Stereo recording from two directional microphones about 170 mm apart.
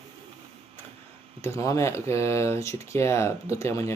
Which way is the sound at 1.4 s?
15° left (ahead or behind).